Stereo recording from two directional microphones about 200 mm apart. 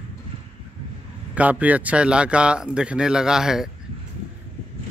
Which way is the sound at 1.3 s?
5° right (ahead or behind).